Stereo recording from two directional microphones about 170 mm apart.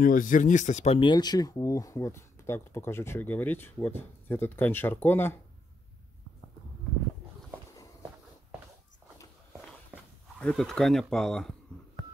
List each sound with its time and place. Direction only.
0.0 s speech: 55° left (ahead or behind)
0.9 s speech: 25° left (ahead or behind)
10.4 s speech: centre (ahead or behind)